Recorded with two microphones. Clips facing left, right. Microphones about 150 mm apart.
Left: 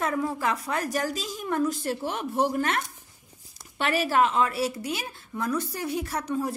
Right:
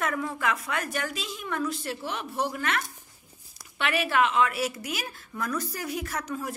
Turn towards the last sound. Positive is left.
turn(degrees=30)  # may be behind; listen again after turning